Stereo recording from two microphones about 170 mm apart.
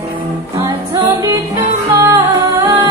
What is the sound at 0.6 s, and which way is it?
Music, 20° right (ahead or behind).